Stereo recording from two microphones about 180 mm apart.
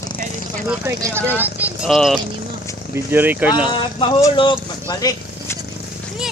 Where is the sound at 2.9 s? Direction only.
10° right (ahead or behind).